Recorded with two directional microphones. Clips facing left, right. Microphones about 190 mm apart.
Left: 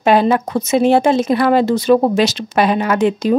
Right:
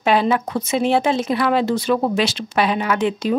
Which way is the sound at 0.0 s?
45° left (ahead or behind).